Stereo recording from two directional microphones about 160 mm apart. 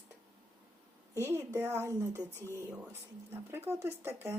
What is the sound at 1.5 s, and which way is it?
Speech, 10° right (ahead or behind).